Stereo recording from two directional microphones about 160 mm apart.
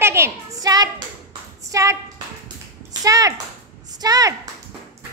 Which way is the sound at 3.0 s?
20° right (ahead or behind).